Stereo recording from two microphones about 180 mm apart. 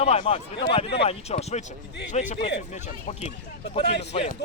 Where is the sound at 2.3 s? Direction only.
70° left (ahead or behind).